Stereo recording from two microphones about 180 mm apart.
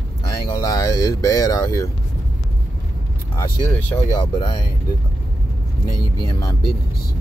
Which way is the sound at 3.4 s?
15° left (ahead or behind).